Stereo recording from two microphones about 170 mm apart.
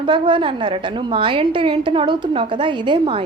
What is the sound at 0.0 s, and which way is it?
A woman's voice, 25° right (ahead or behind).